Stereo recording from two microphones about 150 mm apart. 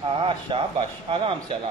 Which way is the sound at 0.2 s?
35° right (ahead or behind).